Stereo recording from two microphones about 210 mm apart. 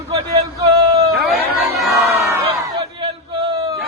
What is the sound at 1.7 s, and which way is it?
Crowd, centre (ahead or behind).